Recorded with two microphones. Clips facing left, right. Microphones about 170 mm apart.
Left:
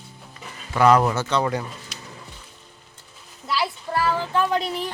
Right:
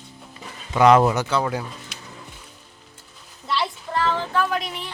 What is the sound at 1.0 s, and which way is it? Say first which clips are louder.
Speech: right 2 dB; 10° right (ahead or behind).